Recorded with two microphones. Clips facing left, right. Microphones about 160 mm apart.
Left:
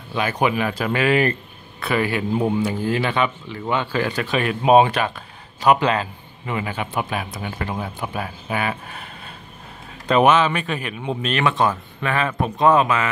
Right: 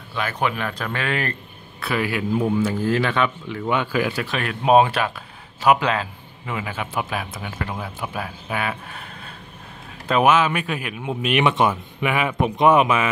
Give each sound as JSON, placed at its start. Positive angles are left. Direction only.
{"t": 0.1, "sound": "a man's voice", "side_deg": 15}
{"t": 2.7, "sound": "speech", "side_deg": 10}
{"t": 3.7, "sound": "a man's voice", "side_deg": -10}
{"t": 10.0, "sound": "a man's voice", "side_deg": -5}